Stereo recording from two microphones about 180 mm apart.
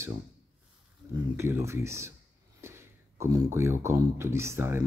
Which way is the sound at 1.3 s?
15° right (ahead or behind).